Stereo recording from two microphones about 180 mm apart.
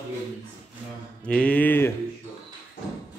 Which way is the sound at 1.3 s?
5° left (ahead or behind).